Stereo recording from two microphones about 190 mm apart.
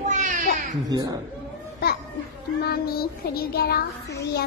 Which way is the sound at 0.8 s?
20° right (ahead or behind).